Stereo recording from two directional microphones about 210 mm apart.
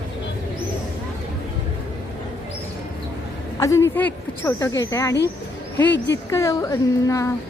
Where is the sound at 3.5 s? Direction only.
15° left (ahead or behind).